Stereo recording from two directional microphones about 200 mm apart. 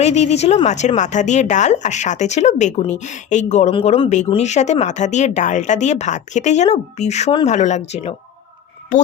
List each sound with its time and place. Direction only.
0.0 s speech: 35° left (ahead or behind)
3.7 s speech: 25° left (ahead or behind)